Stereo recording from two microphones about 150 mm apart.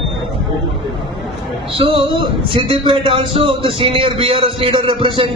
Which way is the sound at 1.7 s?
35° right (ahead or behind).